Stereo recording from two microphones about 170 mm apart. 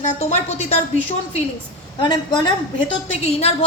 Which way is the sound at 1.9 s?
25° left (ahead or behind).